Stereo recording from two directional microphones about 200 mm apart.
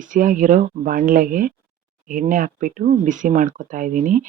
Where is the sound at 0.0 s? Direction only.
40° right (ahead or behind).